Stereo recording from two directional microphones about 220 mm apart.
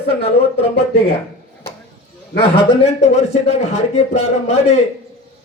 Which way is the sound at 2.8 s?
30° left (ahead or behind).